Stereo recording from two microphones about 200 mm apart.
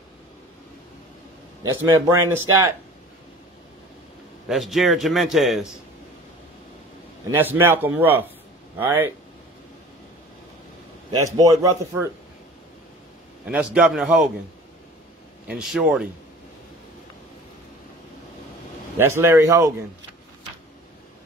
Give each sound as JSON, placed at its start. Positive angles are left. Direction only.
{"t": 1.6, "sound": "speech", "side_deg": -15}
{"t": 4.5, "sound": "a man's voice", "side_deg": 0}
{"t": 7.2, "sound": "speech", "side_deg": -10}
{"t": 11.1, "sound": "a man's voice", "side_deg": -20}
{"t": 13.5, "sound": "a man's voice", "side_deg": -5}
{"t": 15.4, "sound": "a man's voice", "side_deg": 0}
{"t": 18.9, "sound": "speech", "side_deg": -10}